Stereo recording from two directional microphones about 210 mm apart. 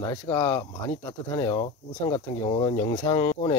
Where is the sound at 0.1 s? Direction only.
20° left (ahead or behind).